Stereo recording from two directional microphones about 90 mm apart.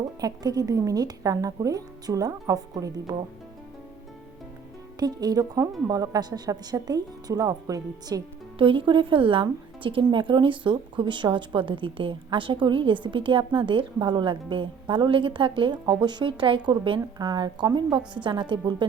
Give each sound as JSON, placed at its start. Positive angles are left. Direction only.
{"t": 0.2, "sound": "speech", "side_deg": -45}
{"t": 4.9, "sound": "a woman's voice", "side_deg": -45}
{"t": 8.5, "sound": "a woman's voice", "side_deg": -70}
{"t": 17.2, "sound": "a woman's voice", "side_deg": -50}